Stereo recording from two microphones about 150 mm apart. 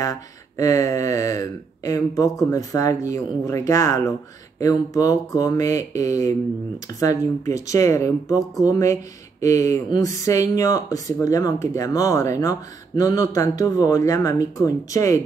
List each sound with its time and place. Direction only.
0.0 s speech: 20° left (ahead or behind)